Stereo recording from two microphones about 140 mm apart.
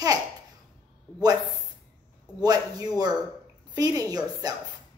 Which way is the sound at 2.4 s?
25° right (ahead or behind).